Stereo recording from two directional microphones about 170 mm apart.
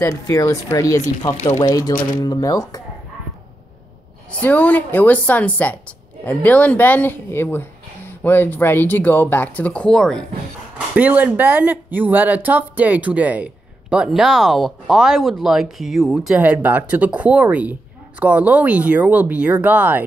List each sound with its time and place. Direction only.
0.0 s speech: 20° left (ahead or behind)
4.4 s speech: 10° left (ahead or behind)
11.0 s speech: 10° right (ahead or behind)